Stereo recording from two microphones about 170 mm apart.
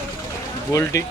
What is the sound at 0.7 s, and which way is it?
Speech, 20° left (ahead or behind).